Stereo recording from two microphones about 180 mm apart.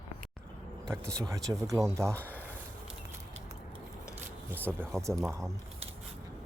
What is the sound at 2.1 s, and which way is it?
Speech, 10° left (ahead or behind).